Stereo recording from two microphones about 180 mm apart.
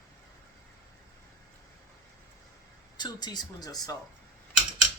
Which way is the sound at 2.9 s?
20° left (ahead or behind).